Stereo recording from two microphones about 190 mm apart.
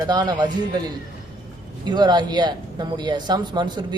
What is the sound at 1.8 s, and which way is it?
Speech, 20° right (ahead or behind).